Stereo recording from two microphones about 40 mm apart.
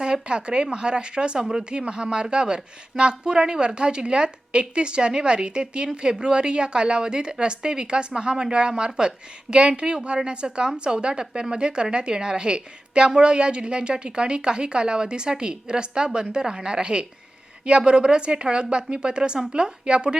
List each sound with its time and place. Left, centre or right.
0.0 s speech: right